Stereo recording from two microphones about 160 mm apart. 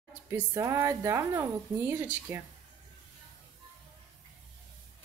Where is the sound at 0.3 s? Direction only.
15° right (ahead or behind).